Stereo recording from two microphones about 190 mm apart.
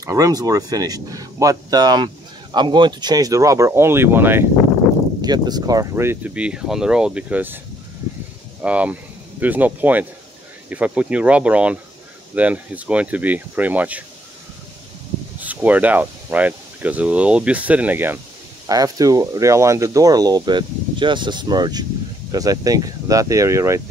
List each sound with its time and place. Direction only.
0.0 s speech: 20° right (ahead or behind)
8.6 s speech: 5° right (ahead or behind)
15.4 s speech: 10° right (ahead or behind)